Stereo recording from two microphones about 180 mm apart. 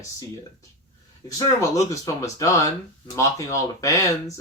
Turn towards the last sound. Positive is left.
turn(degrees=20)  # may be behind; listen again after turning